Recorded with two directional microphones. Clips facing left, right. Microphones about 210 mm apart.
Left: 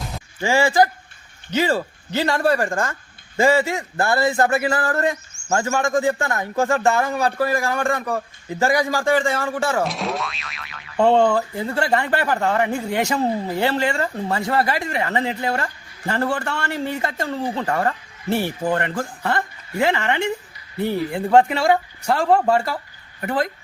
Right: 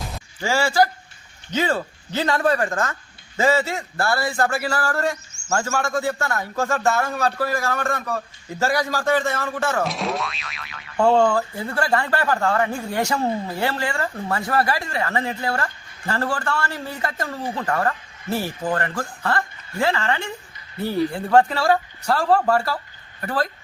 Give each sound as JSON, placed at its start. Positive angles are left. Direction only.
{"t": 0.4, "sound": "speech", "side_deg": 15}
{"t": 9.8, "sound": "speech", "side_deg": 0}
{"t": 10.9, "sound": "speech", "side_deg": 20}